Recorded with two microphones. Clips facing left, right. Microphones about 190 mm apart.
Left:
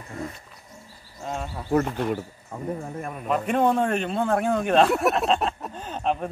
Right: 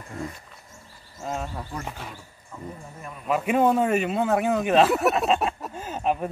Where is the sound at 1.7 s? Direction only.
65° left (ahead or behind).